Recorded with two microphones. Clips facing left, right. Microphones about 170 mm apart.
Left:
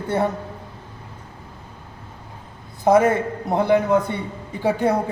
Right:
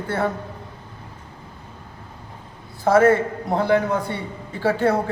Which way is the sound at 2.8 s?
15° left (ahead or behind).